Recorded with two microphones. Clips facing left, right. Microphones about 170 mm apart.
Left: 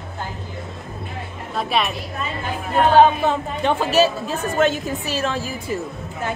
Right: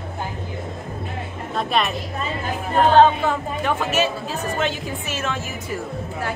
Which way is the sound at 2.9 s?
15° left (ahead or behind).